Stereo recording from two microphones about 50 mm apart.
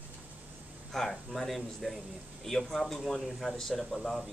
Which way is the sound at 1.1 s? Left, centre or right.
Centre.